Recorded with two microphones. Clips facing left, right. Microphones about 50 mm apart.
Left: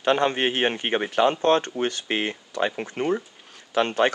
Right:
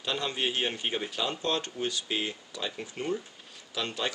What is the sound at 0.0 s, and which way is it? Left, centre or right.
Speech, left.